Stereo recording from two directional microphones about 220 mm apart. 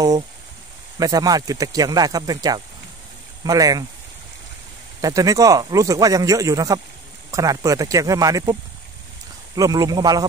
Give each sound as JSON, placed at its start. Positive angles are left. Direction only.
{"t": 0.9, "sound": "speech", "side_deg": -15}
{"t": 5.0, "sound": "speech", "side_deg": -15}
{"t": 9.6, "sound": "speech", "side_deg": -15}